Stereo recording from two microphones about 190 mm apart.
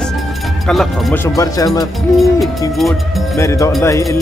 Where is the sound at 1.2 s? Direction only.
15° left (ahead or behind).